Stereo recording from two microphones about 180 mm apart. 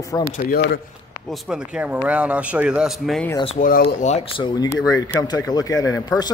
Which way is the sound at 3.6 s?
50° left (ahead or behind).